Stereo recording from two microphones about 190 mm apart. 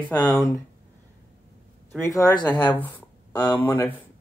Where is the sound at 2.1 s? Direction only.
20° left (ahead or behind).